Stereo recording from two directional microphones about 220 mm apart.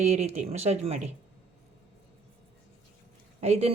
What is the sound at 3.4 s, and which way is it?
Speech, 30° right (ahead or behind).